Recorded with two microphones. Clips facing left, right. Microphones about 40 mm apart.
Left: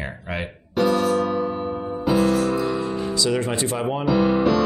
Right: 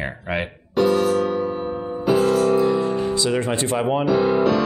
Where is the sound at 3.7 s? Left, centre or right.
Right.